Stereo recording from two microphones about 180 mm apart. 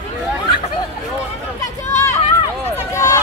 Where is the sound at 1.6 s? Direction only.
15° left (ahead or behind).